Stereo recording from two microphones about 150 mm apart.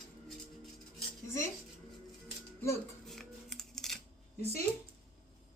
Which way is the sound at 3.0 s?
Centre (ahead or behind).